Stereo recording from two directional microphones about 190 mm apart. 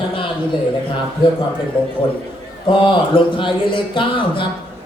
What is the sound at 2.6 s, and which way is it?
A man's voice, 25° left (ahead or behind).